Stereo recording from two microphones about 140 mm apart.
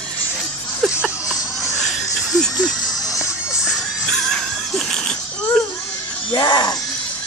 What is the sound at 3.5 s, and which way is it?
Music, 5° right (ahead or behind).